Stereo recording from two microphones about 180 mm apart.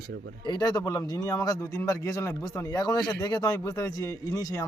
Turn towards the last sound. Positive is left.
turn(degrees=15)  # may be behind; listen again after turning